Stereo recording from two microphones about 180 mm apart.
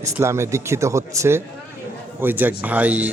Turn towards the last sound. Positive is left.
turn(degrees=-10)  # may be behind; listen again after turning